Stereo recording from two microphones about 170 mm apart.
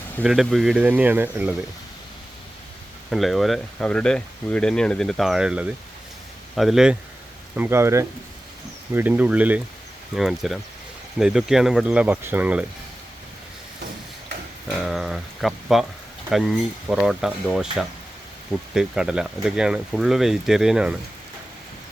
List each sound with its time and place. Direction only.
0.2 s speech: centre (ahead or behind)
3.1 s speech: centre (ahead or behind)
7.5 s speech: 10° right (ahead or behind)
14.8 s speech: centre (ahead or behind)